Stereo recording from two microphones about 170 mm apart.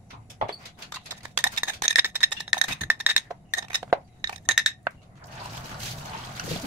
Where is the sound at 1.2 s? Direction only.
10° right (ahead or behind).